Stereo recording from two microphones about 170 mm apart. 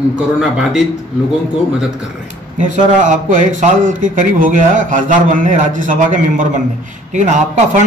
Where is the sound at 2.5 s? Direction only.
45° right (ahead or behind).